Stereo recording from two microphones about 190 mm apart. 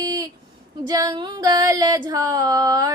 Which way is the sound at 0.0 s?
20° right (ahead or behind).